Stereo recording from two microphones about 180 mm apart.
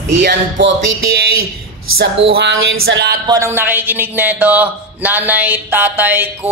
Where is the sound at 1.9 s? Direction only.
75° right (ahead or behind).